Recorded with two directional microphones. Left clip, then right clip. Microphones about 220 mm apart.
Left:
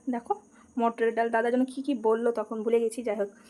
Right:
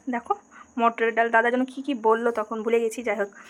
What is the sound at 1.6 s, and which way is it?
Speech, 10° right (ahead or behind).